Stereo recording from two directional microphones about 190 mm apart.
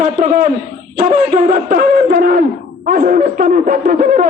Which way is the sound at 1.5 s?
45° right (ahead or behind).